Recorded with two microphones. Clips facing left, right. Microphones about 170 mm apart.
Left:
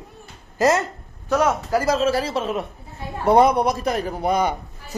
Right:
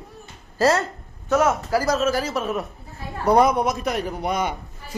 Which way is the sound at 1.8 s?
30° left (ahead or behind).